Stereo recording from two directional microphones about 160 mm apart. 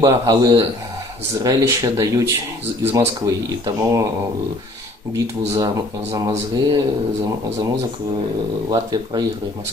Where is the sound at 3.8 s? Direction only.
20° right (ahead or behind).